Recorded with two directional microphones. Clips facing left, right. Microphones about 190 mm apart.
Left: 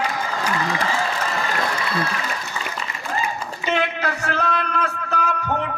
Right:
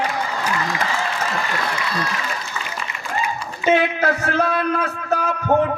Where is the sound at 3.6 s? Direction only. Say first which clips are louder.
Right 6 dB; 50° right (ahead or behind).